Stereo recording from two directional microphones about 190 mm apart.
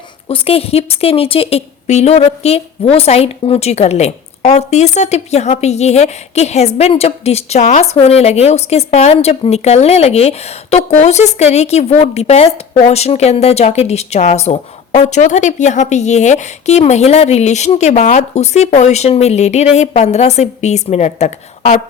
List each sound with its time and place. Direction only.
0.3 s a woman's voice: 30° left (ahead or behind)